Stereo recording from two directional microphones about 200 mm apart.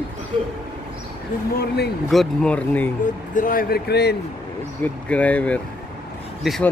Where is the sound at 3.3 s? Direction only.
45° left (ahead or behind).